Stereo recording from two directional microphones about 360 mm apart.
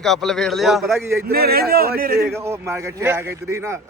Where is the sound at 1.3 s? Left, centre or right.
Right.